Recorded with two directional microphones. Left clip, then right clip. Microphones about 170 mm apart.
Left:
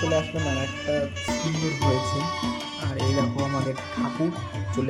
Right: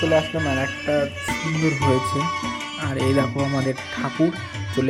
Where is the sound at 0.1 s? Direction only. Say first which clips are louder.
Right 5 dB; 15° right (ahead or behind).